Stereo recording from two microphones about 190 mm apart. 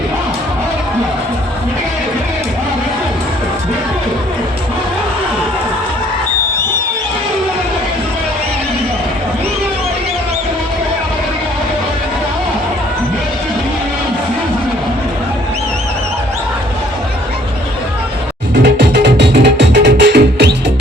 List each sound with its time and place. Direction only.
18.6 s music: 65° right (ahead or behind)